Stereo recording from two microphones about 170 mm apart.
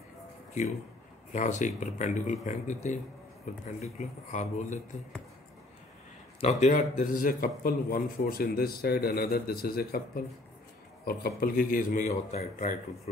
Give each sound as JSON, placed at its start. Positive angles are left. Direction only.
{"t": 1.3, "sound": "a man's voice", "side_deg": 45}
{"t": 6.4, "sound": "a man's voice", "side_deg": 45}
{"t": 11.1, "sound": "a man's voice", "side_deg": 60}